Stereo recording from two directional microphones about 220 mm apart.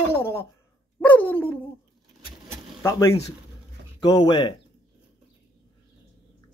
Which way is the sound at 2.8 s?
15° left (ahead or behind).